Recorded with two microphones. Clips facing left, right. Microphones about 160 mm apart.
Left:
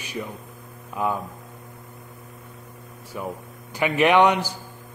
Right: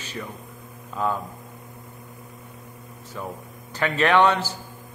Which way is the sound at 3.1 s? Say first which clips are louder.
Left 2 dB; 15° left (ahead or behind).